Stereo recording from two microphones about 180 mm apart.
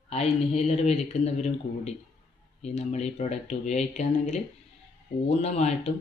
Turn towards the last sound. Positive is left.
turn(degrees=40)  # may be behind; listen again after turning